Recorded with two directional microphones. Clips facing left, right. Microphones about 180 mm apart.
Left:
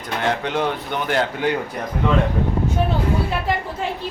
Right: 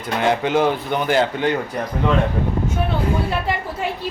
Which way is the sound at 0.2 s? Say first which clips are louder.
Right 4 dB; 5° right (ahead or behind).